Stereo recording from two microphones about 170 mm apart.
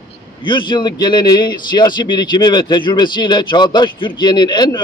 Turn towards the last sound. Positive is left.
turn(degrees=25)  # may be behind; listen again after turning